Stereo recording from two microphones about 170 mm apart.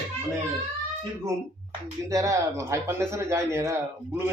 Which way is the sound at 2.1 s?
20° right (ahead or behind).